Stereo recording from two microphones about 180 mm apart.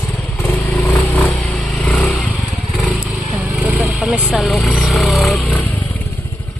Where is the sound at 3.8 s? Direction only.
5° right (ahead or behind); by 6.0 s 10° left (ahead or behind).